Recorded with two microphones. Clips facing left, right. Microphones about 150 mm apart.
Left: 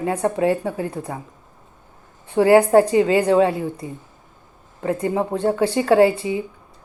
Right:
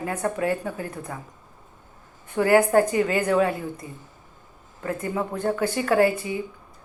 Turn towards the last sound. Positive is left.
turn(degrees=25)  # may be behind; listen again after turning